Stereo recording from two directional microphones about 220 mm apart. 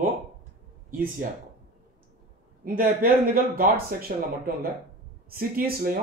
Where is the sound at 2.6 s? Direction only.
40° right (ahead or behind).